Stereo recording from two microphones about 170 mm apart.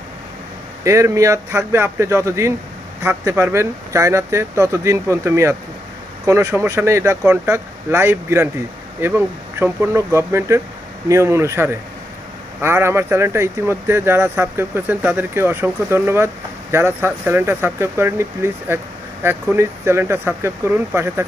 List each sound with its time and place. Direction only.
0.8 s speech: 15° right (ahead or behind)